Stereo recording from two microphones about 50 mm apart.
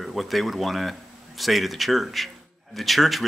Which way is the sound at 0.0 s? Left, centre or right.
Centre.